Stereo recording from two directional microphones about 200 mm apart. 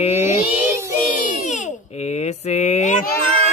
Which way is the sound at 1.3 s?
35° left (ahead or behind).